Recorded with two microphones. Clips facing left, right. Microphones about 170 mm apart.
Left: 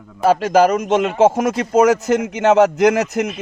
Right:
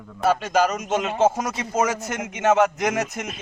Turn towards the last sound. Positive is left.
turn(degrees=70)  # may be behind; listen again after turning